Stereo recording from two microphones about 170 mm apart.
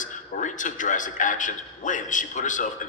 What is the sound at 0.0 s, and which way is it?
A man's voice, 50° left (ahead or behind).